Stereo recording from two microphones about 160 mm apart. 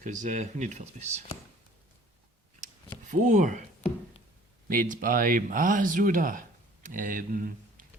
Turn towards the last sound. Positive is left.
turn(degrees=-60)  # may be behind; listen again after turning